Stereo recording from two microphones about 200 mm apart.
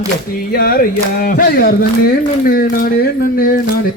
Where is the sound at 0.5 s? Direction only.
45° left (ahead or behind).